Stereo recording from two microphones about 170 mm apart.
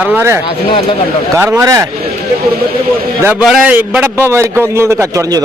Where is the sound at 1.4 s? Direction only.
15° right (ahead or behind).